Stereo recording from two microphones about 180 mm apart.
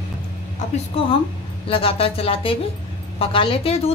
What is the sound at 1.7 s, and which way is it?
Speech, 30° left (ahead or behind).